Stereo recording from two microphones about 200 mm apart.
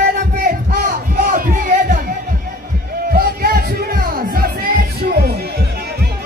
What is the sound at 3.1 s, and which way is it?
Music, 50° right (ahead or behind).